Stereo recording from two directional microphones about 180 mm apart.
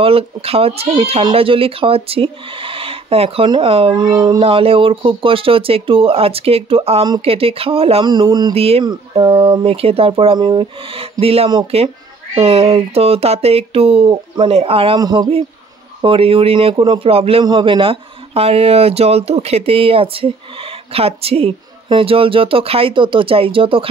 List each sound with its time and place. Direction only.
0.0 s speech: 30° right (ahead or behind)